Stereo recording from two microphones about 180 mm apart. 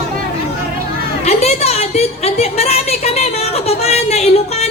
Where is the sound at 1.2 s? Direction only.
35° left (ahead or behind).